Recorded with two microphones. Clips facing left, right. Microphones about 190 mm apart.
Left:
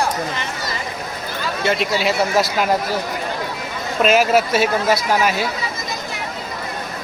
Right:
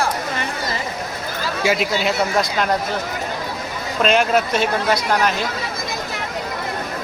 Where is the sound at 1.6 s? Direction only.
5° right (ahead or behind).